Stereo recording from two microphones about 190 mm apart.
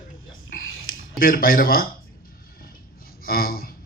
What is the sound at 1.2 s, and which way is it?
Speech, 50° left (ahead or behind).